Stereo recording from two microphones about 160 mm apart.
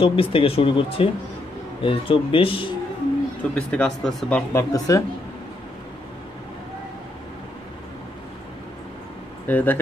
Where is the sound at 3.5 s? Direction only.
5° left (ahead or behind).